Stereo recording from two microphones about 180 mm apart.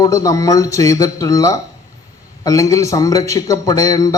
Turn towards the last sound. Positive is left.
turn(degrees=20)  # may be behind; listen again after turning